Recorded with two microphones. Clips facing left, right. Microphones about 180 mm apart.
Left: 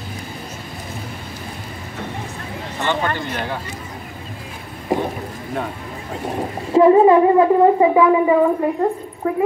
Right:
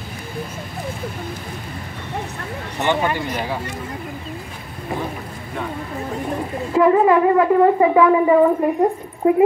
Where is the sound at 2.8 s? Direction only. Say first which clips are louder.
Right 2 dB; 15° right (ahead or behind).